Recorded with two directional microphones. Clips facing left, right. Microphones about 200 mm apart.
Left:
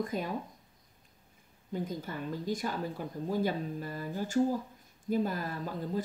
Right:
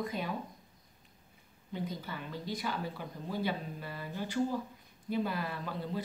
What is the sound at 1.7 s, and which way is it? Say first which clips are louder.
Speech: left 3 dB; 45° left (ahead or behind).